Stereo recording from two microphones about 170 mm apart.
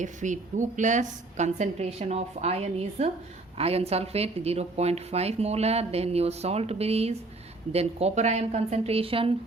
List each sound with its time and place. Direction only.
0.0 s a woman's voice: 45° right (ahead or behind)